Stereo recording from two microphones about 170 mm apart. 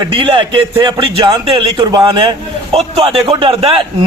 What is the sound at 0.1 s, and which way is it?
A man's voice, 30° right (ahead or behind).